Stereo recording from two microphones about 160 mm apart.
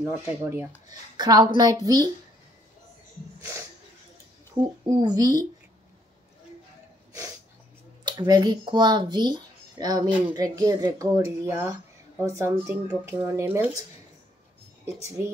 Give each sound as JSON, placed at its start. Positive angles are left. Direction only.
{"t": 0.0, "sound": "dishes", "side_deg": -15}
{"t": 1.1, "sound": "speech", "side_deg": -25}
{"t": 4.8, "sound": "speech", "side_deg": -25}
{"t": 8.0, "sound": "speech", "side_deg": -25}